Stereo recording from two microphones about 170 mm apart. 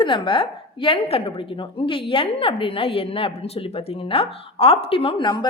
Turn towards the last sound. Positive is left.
turn(degrees=25)  # may be behind; listen again after turning